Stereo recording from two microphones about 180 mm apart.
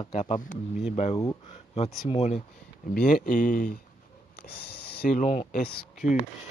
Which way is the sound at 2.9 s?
50° left (ahead or behind).